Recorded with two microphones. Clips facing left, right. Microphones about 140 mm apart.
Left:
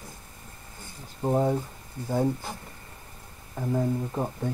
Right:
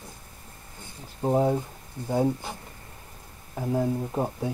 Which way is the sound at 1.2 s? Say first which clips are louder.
Right 1 dB; 5° right (ahead or behind).